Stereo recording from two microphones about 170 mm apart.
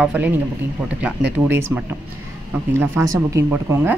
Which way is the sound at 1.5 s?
15° right (ahead or behind).